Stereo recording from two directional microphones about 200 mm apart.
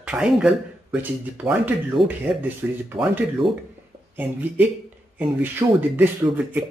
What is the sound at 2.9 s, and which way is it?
Speech, 20° right (ahead or behind).